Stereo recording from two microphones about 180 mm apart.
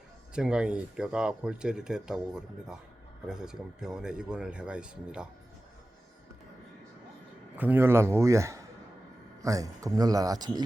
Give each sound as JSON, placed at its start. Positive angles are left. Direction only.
{"t": 0.3, "sound": "speech", "side_deg": -5}
{"t": 7.5, "sound": "a man's voice", "side_deg": -10}